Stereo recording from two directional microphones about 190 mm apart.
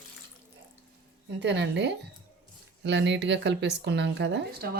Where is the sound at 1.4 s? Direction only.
65° right (ahead or behind).